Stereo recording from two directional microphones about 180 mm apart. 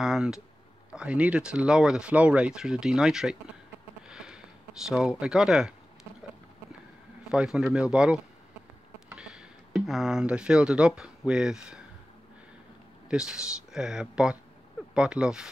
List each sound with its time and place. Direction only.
0.0 s speech: 5° right (ahead or behind)
4.1 s sniff: 5° right (ahead or behind)
4.8 s speech: 5° right (ahead or behind)
7.2 s speech: 5° right (ahead or behind)
9.1 s a sound: 5° right (ahead or behind)
9.8 s speech: centre (ahead or behind)
13.1 s speech: 5° right (ahead or behind)